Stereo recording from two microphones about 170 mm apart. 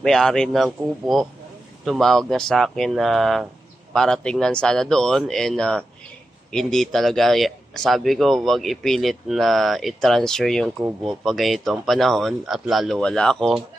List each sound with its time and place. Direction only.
0.0 s speech: 5° left (ahead or behind)